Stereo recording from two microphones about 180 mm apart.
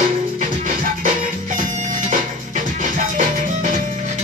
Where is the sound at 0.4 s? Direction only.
50° right (ahead or behind).